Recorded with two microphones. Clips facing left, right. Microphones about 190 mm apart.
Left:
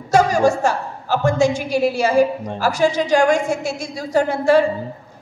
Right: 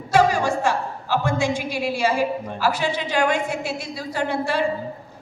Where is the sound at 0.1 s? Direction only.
45° left (ahead or behind).